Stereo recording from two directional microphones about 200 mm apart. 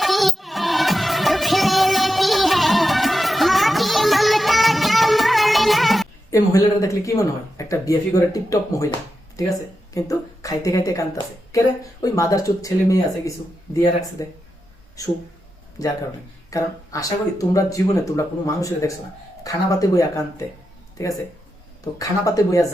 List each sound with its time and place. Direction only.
0.0 s music: centre (ahead or behind)
6.3 s a woman's voice: 15° left (ahead or behind)
16.5 s speech: 15° left (ahead or behind)